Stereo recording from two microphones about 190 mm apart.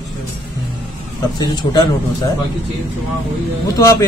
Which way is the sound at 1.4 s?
20° left (ahead or behind).